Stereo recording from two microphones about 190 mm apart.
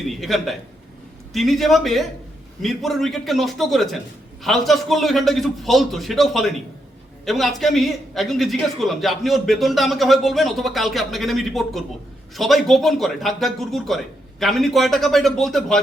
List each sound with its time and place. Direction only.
0.2 s a man's voice: centre (ahead or behind)